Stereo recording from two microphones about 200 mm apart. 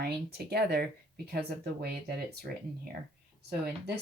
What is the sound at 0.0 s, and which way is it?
Speech, 55° right (ahead or behind).